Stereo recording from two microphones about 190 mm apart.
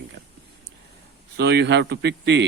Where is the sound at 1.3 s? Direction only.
60° right (ahead or behind).